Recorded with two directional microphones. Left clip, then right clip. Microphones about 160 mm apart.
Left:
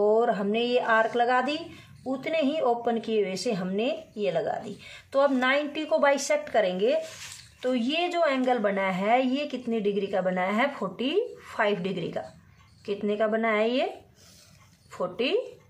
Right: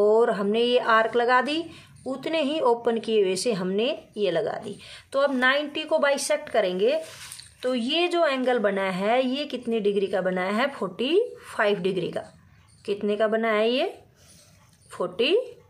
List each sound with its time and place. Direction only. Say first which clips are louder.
0.0 s a woman's voice: right 3 dB; 30° right (ahead or behind)
14.9 s speech: right 4 dB; 30° right (ahead or behind)